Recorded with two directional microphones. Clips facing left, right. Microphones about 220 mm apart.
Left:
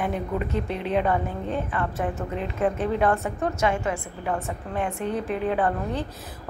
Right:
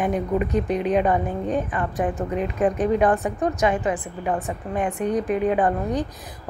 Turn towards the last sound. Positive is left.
turn(degrees=-15)  # may be behind; listen again after turning